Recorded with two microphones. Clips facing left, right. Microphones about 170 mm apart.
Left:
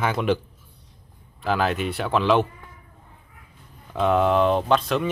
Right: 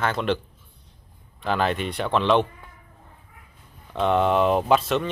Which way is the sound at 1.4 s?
5° left (ahead or behind).